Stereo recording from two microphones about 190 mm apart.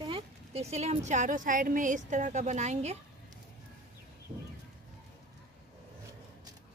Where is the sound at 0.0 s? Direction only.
30° right (ahead or behind).